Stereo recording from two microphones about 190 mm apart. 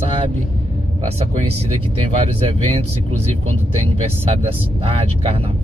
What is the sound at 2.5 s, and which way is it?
Speech, 30° right (ahead or behind).